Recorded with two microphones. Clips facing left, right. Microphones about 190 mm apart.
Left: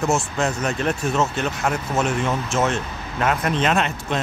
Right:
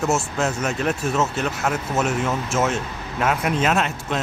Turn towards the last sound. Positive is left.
turn(degrees=-5)  # may be behind; listen again after turning